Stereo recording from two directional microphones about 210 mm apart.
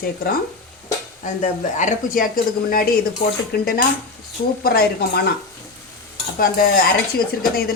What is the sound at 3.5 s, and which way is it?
Dishes, 45° left (ahead or behind).